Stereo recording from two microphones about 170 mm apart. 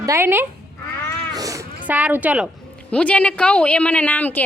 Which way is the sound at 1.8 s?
10° right (ahead or behind).